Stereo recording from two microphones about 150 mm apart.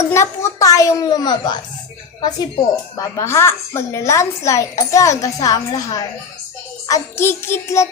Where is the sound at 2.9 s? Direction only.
20° left (ahead or behind).